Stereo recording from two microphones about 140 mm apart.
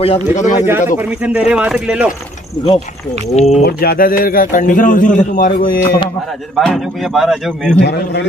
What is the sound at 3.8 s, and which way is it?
A man's voice, 90° left.